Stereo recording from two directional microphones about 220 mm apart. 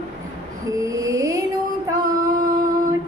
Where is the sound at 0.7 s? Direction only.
15° right (ahead or behind).